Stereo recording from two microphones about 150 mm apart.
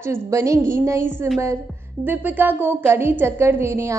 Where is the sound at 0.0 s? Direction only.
20° right (ahead or behind).